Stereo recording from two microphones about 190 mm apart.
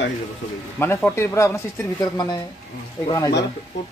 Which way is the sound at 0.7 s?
10° left (ahead or behind).